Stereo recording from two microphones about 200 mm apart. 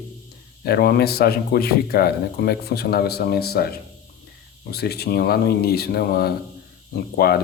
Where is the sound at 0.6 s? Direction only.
50° left (ahead or behind).